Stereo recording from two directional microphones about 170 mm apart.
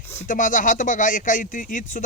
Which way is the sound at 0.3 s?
50° left (ahead or behind).